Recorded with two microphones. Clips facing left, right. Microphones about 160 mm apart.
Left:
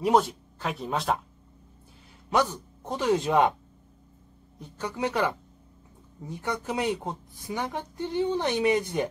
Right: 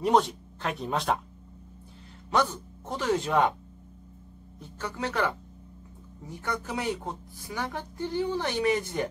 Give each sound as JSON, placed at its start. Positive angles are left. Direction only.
{"t": 0.0, "sound": "speech", "side_deg": 5}
{"t": 2.3, "sound": "speech", "side_deg": 10}
{"t": 4.6, "sound": "a woman's voice", "side_deg": 15}